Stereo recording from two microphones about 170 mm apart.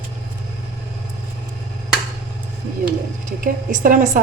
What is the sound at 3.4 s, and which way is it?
Speech, 50° right (ahead or behind).